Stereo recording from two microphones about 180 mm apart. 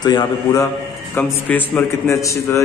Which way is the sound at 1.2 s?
10° left (ahead or behind).